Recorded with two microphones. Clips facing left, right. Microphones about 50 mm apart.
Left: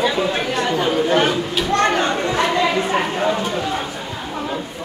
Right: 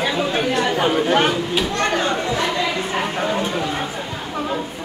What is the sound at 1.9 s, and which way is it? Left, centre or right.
Chatter, left.